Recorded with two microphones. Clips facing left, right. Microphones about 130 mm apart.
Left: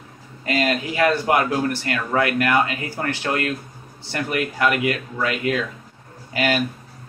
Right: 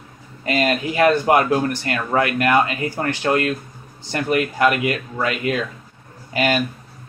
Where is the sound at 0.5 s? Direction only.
25° right (ahead or behind).